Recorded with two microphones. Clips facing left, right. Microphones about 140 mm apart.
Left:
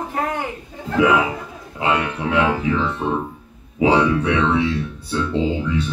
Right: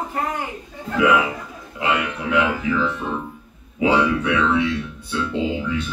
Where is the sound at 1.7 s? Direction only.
30° left (ahead or behind).